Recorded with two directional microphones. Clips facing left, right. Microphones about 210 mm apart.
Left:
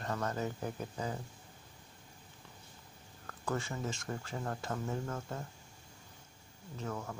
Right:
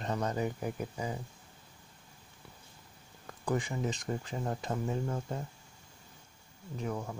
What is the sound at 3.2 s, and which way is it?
Speech, 15° right (ahead or behind).